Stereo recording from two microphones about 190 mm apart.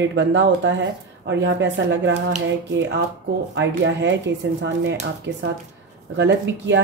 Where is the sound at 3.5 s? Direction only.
70° right (ahead or behind).